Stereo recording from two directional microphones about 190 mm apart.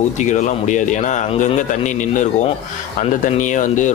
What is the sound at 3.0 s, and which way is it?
Speech, 40° left (ahead or behind).